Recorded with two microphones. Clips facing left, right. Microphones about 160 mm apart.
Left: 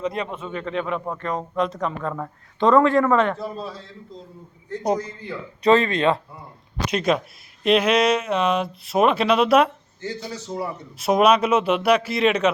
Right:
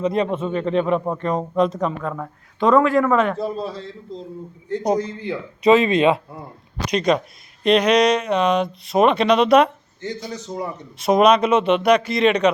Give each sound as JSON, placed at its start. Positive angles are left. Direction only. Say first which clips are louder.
{"t": 0.0, "sound": "speech", "louder": "right 7 dB", "side_deg": -20}
{"t": 2.1, "sound": "speech", "louder": "even", "side_deg": 0}
{"t": 6.9, "sound": "speech", "louder": "right 3 dB", "side_deg": 5}
{"t": 11.0, "sound": "speech", "louder": "right 2 dB", "side_deg": 5}